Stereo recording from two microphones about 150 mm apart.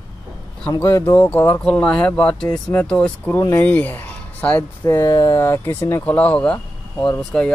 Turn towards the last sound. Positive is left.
turn(degrees=0)  # may be behind; listen again after turning